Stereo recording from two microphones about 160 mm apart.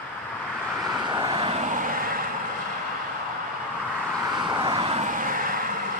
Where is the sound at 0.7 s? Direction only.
Centre (ahead or behind).